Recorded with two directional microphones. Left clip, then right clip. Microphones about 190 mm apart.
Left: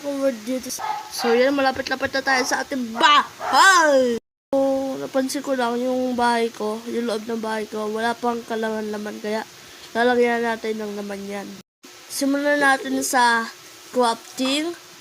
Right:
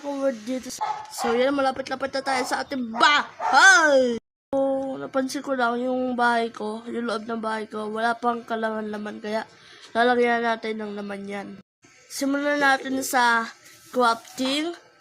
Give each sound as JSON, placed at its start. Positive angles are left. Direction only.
{"t": 0.2, "sound": "speech", "side_deg": 10}
{"t": 3.8, "sound": "speech", "side_deg": 0}